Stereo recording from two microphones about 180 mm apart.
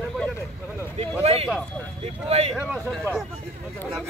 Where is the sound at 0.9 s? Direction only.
35° right (ahead or behind).